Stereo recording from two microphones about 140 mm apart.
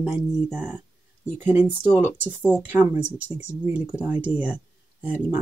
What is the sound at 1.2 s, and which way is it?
Speech, 15° right (ahead or behind).